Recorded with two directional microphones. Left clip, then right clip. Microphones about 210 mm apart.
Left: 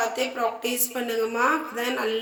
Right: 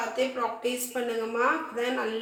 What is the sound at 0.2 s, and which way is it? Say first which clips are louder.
Speech: left 2 dB; 50° left (ahead or behind).